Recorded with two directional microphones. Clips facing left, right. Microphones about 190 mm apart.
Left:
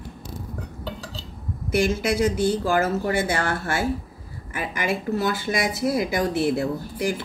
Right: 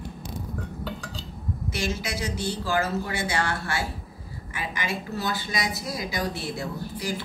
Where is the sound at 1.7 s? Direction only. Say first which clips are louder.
Left 10 dB; 55° left (ahead or behind).